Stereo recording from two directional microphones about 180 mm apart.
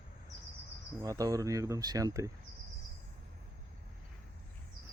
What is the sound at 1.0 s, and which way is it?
Speech, 20° right (ahead or behind).